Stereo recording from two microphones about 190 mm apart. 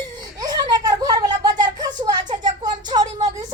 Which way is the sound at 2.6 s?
20° right (ahead or behind).